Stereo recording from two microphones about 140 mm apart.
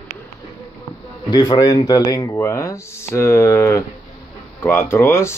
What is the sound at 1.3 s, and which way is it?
Speech, 30° left (ahead or behind).